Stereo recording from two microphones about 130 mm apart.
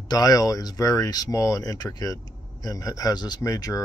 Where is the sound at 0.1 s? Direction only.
30° left (ahead or behind).